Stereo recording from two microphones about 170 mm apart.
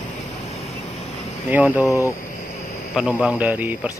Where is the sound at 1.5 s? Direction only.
10° right (ahead or behind).